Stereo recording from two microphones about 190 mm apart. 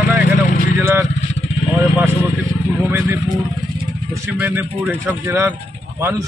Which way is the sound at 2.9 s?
10° right (ahead or behind).